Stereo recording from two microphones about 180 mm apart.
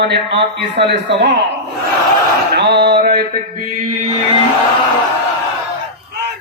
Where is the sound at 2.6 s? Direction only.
70° right (ahead or behind).